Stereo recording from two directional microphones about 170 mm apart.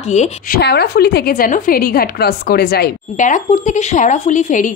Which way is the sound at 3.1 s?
45° left (ahead or behind).